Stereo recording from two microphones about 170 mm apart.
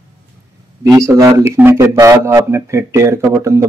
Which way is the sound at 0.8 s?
20° right (ahead or behind).